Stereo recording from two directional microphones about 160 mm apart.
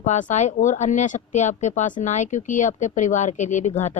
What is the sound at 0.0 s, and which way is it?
Speech, 50° left (ahead or behind).